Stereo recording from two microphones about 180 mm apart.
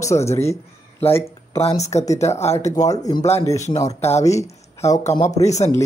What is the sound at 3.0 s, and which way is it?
Speech, 20° left (ahead or behind).